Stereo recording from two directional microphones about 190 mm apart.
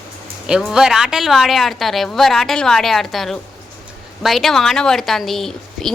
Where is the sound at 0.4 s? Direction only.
5° right (ahead or behind).